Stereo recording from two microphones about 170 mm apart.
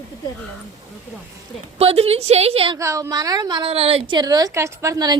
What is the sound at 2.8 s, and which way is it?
A woman's voice, 15° right (ahead or behind).